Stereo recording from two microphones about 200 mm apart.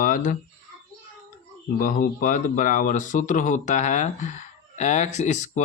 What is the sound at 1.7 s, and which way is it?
Speech, 45° left (ahead or behind).